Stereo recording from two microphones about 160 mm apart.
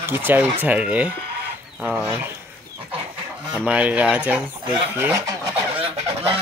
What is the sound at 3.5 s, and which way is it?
Speech, 10° right (ahead or behind).